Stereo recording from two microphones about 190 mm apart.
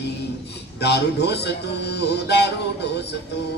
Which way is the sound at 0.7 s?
60° left (ahead or behind).